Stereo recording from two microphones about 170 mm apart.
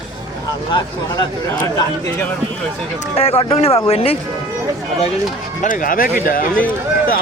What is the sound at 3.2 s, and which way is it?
Speech, 35° left (ahead or behind).